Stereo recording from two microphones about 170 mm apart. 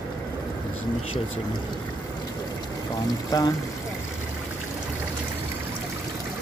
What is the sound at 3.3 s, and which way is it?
Speech, 20° left (ahead or behind).